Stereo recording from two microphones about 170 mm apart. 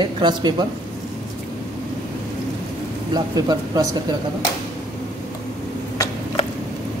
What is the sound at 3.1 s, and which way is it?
Speech, 20° right (ahead or behind).